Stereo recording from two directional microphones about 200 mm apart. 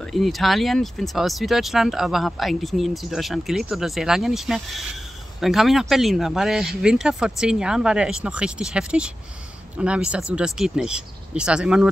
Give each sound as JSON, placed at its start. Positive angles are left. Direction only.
{"t": 0.0, "sound": "speech", "side_deg": 0}